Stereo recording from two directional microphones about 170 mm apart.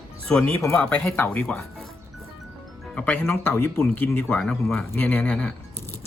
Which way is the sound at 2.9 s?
5° left (ahead or behind).